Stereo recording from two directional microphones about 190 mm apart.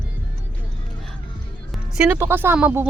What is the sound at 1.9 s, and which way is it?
Speech, 10° right (ahead or behind).